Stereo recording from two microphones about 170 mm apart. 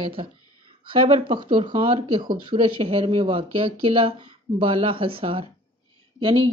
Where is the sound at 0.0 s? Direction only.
30° right (ahead or behind).